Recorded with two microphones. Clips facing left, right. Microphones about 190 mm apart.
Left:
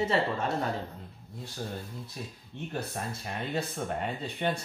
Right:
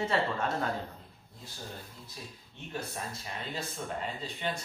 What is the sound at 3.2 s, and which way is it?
Speech, 60° left (ahead or behind).